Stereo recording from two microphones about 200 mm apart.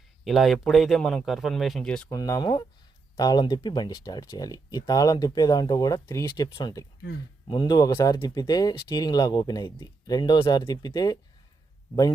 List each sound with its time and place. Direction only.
0.3 s speech: centre (ahead or behind)
2.1 s speech: 15° left (ahead or behind)